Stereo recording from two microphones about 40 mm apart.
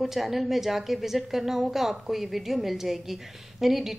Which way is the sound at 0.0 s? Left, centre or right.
Centre.